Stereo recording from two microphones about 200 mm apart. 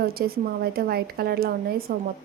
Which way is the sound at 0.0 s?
50° right (ahead or behind).